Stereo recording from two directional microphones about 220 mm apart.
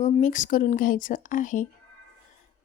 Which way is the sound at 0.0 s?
35° left (ahead or behind).